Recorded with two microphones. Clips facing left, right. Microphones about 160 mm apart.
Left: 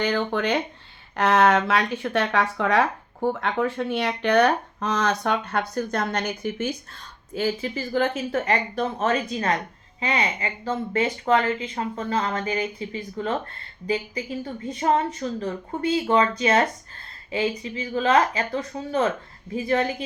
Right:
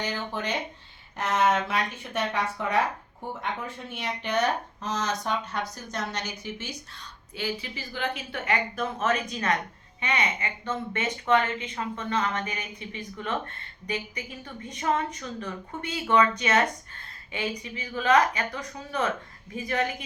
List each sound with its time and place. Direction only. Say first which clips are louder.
0.0 s speech: left 8 dB; 65° left (ahead or behind)
1.1 s speech: left 6 dB; 85° left; by 20.1 s 30° left (ahead or behind)